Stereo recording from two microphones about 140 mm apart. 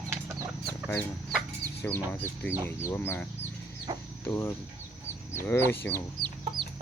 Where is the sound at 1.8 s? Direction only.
15° left (ahead or behind).